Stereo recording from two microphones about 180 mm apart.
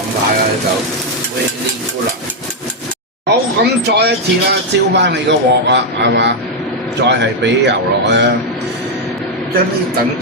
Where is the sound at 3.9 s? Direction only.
65° right (ahead or behind).